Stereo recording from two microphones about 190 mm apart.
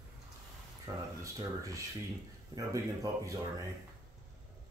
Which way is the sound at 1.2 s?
15° right (ahead or behind).